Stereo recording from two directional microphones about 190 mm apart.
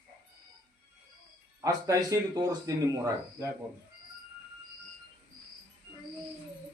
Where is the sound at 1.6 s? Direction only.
20° right (ahead or behind).